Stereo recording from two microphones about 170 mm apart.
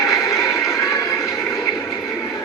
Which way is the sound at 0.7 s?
20° left (ahead or behind).